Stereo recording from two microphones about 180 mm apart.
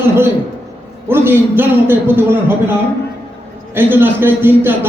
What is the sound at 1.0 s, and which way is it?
A man's voice, 15° right (ahead or behind).